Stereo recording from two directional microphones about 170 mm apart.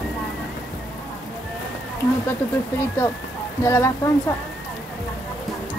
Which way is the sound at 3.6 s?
15° left (ahead or behind).